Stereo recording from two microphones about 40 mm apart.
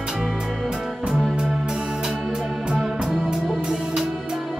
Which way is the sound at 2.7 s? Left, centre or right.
Centre.